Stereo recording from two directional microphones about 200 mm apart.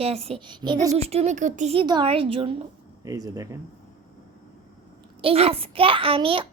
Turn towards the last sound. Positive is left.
turn(degrees=-25)  # may be behind; listen again after turning